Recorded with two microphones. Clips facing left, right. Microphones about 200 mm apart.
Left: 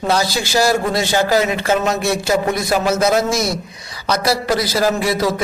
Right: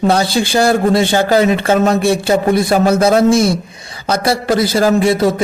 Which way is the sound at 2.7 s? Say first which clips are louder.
Right 5 dB; 55° right (ahead or behind).